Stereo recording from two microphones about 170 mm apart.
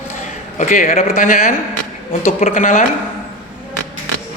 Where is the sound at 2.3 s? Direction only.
40° left (ahead or behind).